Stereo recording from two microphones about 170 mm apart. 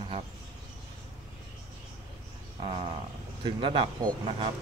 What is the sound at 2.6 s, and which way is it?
Speech, 30° right (ahead or behind).